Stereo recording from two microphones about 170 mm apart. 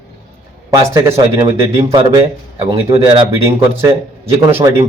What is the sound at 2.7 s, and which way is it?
Speech, 25° right (ahead or behind).